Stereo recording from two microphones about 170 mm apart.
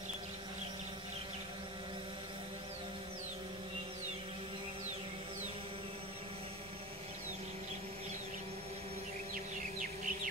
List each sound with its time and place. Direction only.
9.3 s music: 50° right (ahead or behind)